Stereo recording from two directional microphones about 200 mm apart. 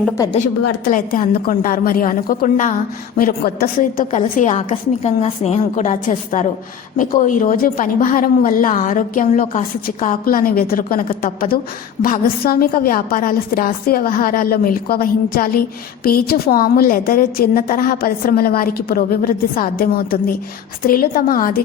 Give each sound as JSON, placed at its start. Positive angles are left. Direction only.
{"t": 0.3, "sound": "a woman's voice", "side_deg": 40}